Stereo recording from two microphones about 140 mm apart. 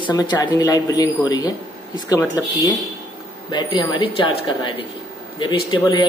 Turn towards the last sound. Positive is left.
turn(degrees=35)  # may be behind; listen again after turning